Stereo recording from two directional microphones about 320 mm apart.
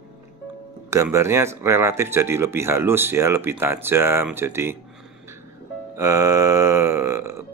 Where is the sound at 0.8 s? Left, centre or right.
Centre.